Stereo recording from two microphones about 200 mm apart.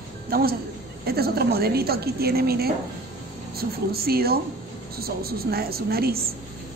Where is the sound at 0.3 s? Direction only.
50° right (ahead or behind).